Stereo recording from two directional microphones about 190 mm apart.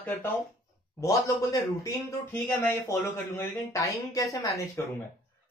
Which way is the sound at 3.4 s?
15° left (ahead or behind).